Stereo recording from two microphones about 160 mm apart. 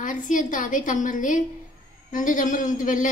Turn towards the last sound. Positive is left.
turn(degrees=55)  # may be behind; listen again after turning